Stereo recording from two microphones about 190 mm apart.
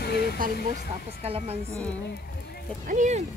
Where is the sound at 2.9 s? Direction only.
40° right (ahead or behind).